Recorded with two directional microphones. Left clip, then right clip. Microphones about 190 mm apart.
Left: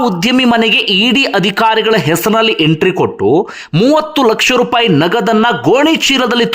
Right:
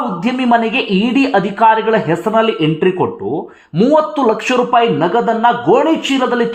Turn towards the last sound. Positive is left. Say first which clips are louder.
# left 4 dB
turn(degrees=35)  # may be behind; listen again after turning